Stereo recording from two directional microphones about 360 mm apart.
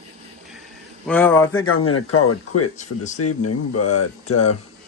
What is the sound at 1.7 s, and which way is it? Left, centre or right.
Speech, left.